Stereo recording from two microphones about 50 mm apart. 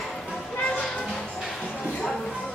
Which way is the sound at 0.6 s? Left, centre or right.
Left.